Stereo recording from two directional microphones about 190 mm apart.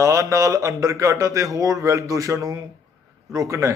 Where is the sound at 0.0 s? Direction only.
15° right (ahead or behind).